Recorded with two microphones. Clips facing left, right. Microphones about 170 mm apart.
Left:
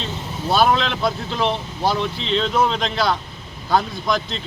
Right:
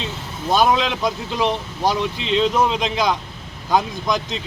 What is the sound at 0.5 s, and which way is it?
Speech, 15° right (ahead or behind).